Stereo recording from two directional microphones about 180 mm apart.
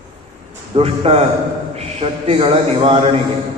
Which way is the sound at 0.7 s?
35° right (ahead or behind).